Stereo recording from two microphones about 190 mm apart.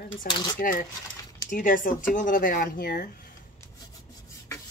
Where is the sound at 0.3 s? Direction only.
55° left (ahead or behind).